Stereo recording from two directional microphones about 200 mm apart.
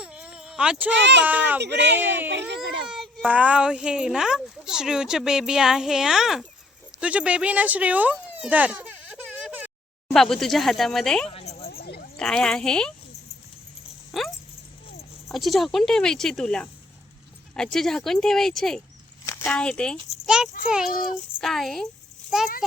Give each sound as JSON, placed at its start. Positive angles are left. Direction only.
{"t": 0.0, "sound": "a sound", "side_deg": -5}
{"t": 0.9, "sound": "speech", "side_deg": -60}
{"t": 1.2, "sound": "a woman's voice", "side_deg": -10}
{"t": 1.6, "sound": "speech", "side_deg": -60}
{"t": 2.0, "sound": "a woman's voice", "side_deg": -10}
{"t": 8.1, "sound": "baby cry", "side_deg": -5}
{"t": 10.1, "sound": "speech", "side_deg": 0}
{"t": 11.3, "sound": "a sound", "side_deg": 30}
{"t": 11.7, "sound": "a sound", "side_deg": 50}
{"t": 12.1, "sound": "speech", "side_deg": 5}
{"t": 14.1, "sound": "speech", "side_deg": 0}
{"t": 19.2, "sound": "a child's voice", "side_deg": 15}